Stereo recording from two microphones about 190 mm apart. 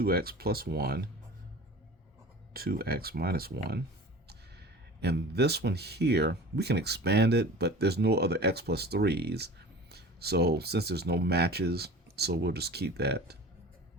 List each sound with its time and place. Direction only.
0.0 s speech: 55° right (ahead or behind)
2.5 s speech: 50° right (ahead or behind)
4.9 s speech: 60° right (ahead or behind)